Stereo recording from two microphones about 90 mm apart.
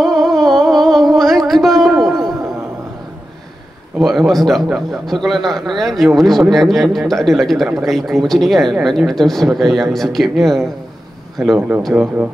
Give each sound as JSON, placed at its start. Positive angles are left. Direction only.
{"t": 0.0, "sound": "a sound", "side_deg": 0}
{"t": 4.0, "sound": "speech", "side_deg": 0}
{"t": 11.9, "sound": "speech", "side_deg": -20}